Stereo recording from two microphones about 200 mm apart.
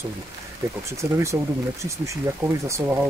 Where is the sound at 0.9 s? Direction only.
15° right (ahead or behind).